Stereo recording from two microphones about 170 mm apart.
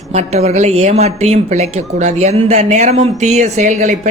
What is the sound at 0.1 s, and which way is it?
A woman's voice, 40° right (ahead or behind).